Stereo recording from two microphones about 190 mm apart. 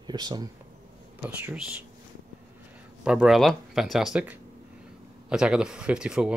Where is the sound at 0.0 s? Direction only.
20° right (ahead or behind).